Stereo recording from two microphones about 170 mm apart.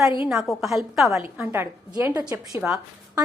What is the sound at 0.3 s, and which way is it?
Speech, centre (ahead or behind).